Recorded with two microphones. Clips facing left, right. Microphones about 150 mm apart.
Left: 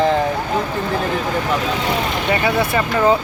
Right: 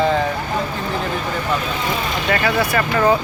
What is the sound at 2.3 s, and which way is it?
Speech, 20° left (ahead or behind).